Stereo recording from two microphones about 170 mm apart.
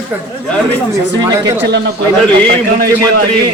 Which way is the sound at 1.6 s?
90° right.